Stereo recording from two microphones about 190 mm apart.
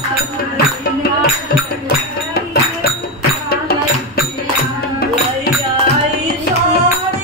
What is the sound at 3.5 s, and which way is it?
Music, 55° left (ahead or behind).